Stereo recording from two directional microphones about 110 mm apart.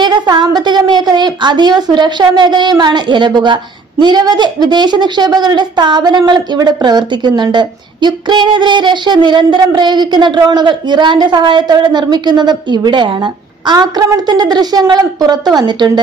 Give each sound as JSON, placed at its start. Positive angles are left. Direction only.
{"t": 0.0, "sound": "a woman's voice", "side_deg": -40}